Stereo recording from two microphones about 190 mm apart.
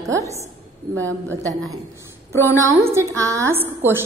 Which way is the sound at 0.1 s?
15° right (ahead or behind).